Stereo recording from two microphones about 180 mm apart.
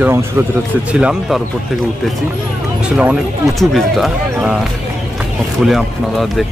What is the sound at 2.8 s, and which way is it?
Speech, 5° right (ahead or behind).